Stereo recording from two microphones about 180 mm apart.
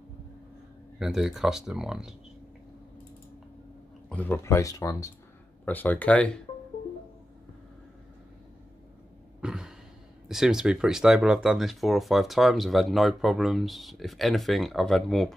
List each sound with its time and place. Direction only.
0.9 s speech: centre (ahead or behind)
4.1 s speech: 10° left (ahead or behind)
9.4 s a sound: 5° right (ahead or behind)
10.2 s speech: centre (ahead or behind)